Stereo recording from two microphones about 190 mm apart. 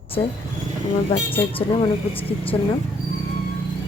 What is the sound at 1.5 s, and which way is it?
Speech, 30° left (ahead or behind).